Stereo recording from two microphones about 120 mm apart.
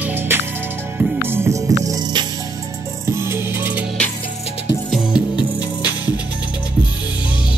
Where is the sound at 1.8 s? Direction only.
35° right (ahead or behind).